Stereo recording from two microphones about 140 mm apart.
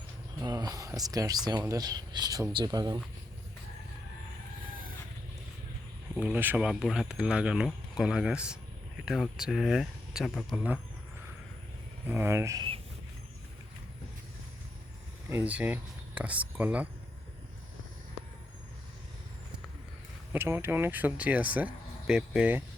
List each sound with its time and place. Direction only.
0.4 s speech: 30° right (ahead or behind)
6.1 s speech: 10° right (ahead or behind)
12.0 s speech: 15° right (ahead or behind)
15.3 s speech: 15° right (ahead or behind)
20.3 s speech: 15° right (ahead or behind)